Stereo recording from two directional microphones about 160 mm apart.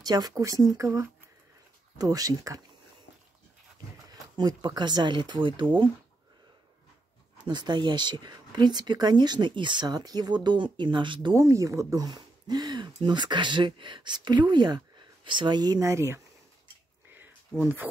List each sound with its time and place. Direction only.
0.0 s speech: 25° right (ahead or behind)
4.4 s speech: 25° right (ahead or behind)
7.3 s speech: 25° right (ahead or behind)
17.1 s a sound: 10° right (ahead or behind)